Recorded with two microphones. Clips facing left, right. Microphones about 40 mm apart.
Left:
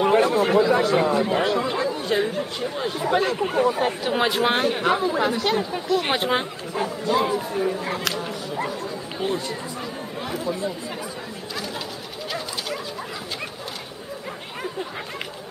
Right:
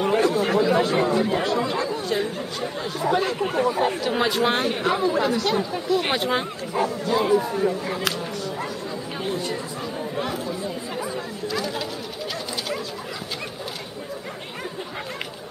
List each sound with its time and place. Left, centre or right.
0.0 s chatter: centre
0.4 s speech: centre
3.3 s speech: centre
3.8 s speech: centre
5.9 s speech: centre
6.1 s speech: centre
6.8 s speech: centre